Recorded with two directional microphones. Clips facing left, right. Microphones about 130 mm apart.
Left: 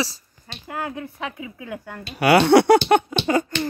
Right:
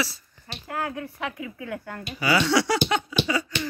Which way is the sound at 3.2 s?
50° left (ahead or behind).